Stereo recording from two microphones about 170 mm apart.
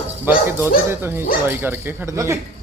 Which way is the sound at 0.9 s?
15° right (ahead or behind).